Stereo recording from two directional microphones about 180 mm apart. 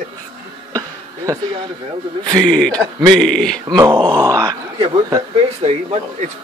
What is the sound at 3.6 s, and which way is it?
Speech, 20° right (ahead or behind).